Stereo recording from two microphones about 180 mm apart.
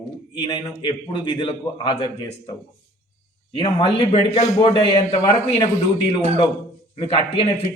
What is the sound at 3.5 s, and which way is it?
A man's voice, 30° left (ahead or behind).